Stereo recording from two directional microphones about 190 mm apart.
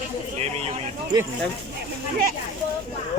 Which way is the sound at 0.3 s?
35° right (ahead or behind).